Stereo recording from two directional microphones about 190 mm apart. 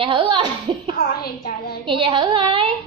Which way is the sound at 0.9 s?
55° left (ahead or behind).